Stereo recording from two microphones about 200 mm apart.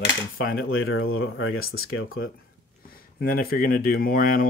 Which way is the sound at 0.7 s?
90° left.